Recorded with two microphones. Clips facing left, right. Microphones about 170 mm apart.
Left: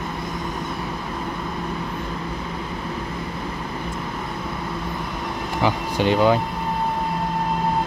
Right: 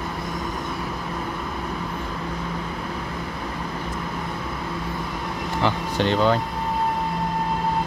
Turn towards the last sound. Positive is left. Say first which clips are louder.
# left 2 dB
turn(degrees=10)  # may be behind; listen again after turning